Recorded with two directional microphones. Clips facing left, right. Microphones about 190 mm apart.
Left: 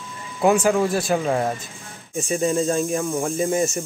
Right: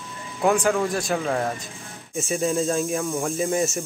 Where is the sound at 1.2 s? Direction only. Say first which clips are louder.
Left 3 dB; 15° left (ahead or behind).